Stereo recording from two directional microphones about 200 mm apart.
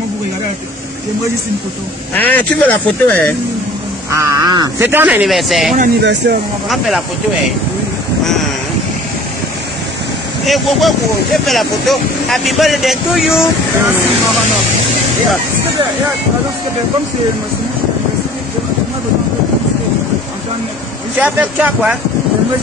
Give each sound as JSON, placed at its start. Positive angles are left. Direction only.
{"t": 2.1, "sound": "speech", "side_deg": 10}
{"t": 4.1, "sound": "speech", "side_deg": -15}
{"t": 4.8, "sound": "speech", "side_deg": -10}
{"t": 5.8, "sound": "speech", "side_deg": -55}
{"t": 10.4, "sound": "speech", "side_deg": 0}
{"t": 21.2, "sound": "speech", "side_deg": -10}